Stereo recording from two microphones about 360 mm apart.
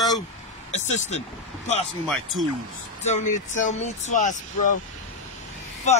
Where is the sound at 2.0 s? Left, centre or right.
Centre.